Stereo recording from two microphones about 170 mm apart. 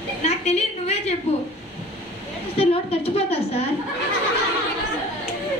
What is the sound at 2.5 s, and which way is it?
A woman's voice, 35° left (ahead or behind).